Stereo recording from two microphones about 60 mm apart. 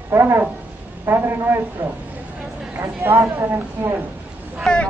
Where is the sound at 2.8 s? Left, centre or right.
Right.